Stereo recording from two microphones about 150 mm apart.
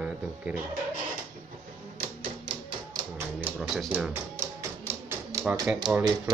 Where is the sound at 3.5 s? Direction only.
Centre (ahead or behind); by 5.4 s 15° right (ahead or behind).